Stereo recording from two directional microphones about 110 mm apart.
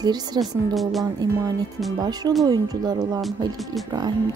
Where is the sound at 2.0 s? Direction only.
35° right (ahead or behind).